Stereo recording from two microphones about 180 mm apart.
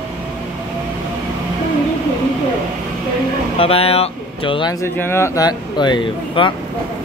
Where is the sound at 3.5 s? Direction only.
30° left (ahead or behind).